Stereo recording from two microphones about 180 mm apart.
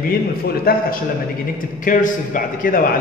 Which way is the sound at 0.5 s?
55° left (ahead or behind).